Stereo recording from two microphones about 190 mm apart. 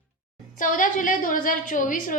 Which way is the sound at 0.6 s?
45° left (ahead or behind).